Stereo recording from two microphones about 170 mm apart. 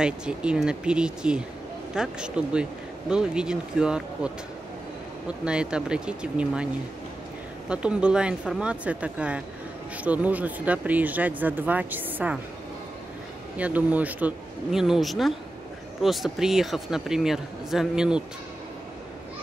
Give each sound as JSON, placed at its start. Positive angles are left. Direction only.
{"t": 0.0, "sound": "speech", "side_deg": -5}
{"t": 5.4, "sound": "speech", "side_deg": -5}
{"t": 7.7, "sound": "speech", "side_deg": -5}
{"t": 13.6, "sound": "speech", "side_deg": -10}